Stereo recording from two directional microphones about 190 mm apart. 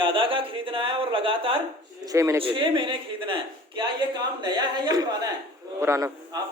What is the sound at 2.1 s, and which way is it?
Speech, 15° right (ahead or behind).